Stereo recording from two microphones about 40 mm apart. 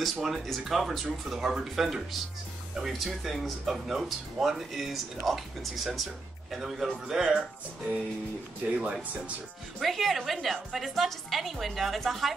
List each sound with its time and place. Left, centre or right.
0.0 s speech: centre
8.6 s speech: right
9.8 s speech: centre